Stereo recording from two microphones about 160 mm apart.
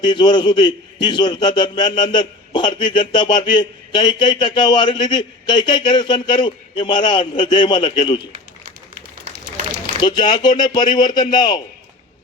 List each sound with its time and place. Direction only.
0.0 s a man's voice: 30° left (ahead or behind)
10.0 s a man's voice: 30° left (ahead or behind)